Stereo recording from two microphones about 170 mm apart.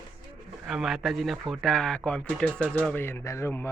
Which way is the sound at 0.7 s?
Centre (ahead or behind).